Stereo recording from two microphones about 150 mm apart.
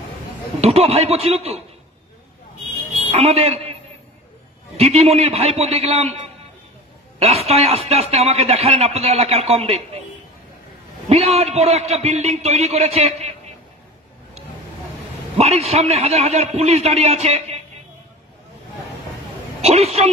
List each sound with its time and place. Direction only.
0.6 s a man's voice: 40° right (ahead or behind)
3.1 s a man's voice: 45° right (ahead or behind)
4.7 s a man's voice: 45° right (ahead or behind)
7.2 s a man's voice: 45° right (ahead or behind)
11.1 s a man's voice: 45° right (ahead or behind)
15.3 s a man's voice: 45° right (ahead or behind)
19.6 s a man's voice: 45° right (ahead or behind)